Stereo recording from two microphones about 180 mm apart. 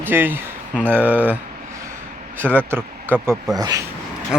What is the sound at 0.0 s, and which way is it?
Speech, 10° right (ahead or behind).